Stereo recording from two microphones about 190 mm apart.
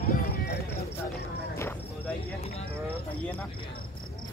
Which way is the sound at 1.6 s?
10° left (ahead or behind).